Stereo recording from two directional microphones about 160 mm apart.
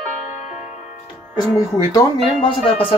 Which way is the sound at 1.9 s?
35° left (ahead or behind).